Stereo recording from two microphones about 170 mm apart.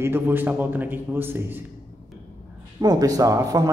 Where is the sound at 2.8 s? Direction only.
20° right (ahead or behind).